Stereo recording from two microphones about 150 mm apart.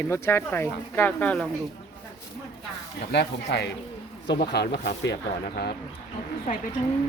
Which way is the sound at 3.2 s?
90° left.